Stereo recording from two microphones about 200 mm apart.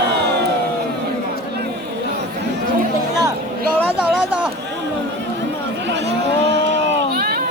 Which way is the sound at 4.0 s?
5° right (ahead or behind).